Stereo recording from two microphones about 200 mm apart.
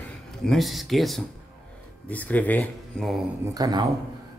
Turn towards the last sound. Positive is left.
turn(degrees=-20)  # may be behind; listen again after turning